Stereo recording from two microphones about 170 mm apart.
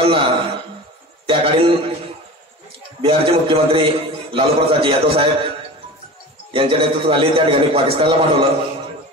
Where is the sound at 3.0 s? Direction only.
30° right (ahead or behind).